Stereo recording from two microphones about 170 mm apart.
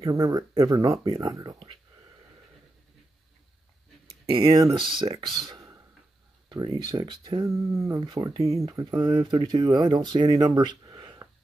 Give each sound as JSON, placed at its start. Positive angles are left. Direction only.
{"t": 0.0, "sound": "speech", "side_deg": -20}
{"t": 4.5, "sound": "speech", "side_deg": -20}
{"t": 5.5, "sound": "a sound", "side_deg": -20}
{"t": 6.5, "sound": "speech", "side_deg": -25}